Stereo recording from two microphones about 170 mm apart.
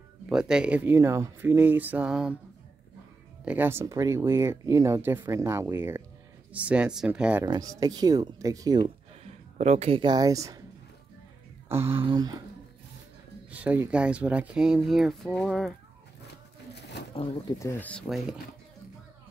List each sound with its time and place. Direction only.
0.3 s speech: 5° right (ahead or behind)
3.4 s speech: 10° right (ahead or behind)
7.4 s speech: 20° right (ahead or behind)
9.2 s speech: 40° right (ahead or behind); by 10.6 s 20° right (ahead or behind)
11.7 s speech: 15° right (ahead or behind)
13.5 s speech: 10° right (ahead or behind)
17.1 s speech: 30° left (ahead or behind)
17.6 s speech: 10° left (ahead or behind)